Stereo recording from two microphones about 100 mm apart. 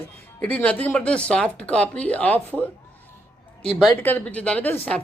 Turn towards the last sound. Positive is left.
turn(degrees=15)  # may be behind; listen again after turning